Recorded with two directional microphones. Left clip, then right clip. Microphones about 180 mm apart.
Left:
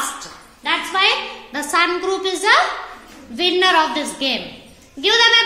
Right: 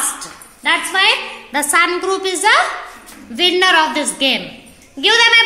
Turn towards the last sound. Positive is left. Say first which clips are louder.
# right 3 dB
turn(degrees=-15)  # may be behind; listen again after turning